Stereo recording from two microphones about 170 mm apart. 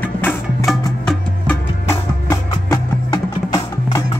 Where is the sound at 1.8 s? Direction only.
15° left (ahead or behind).